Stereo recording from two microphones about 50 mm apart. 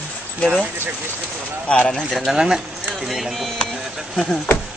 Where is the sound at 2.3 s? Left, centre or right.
Centre.